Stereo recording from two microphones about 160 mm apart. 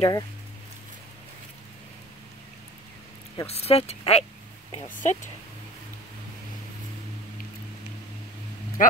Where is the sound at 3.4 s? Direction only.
40° left (ahead or behind).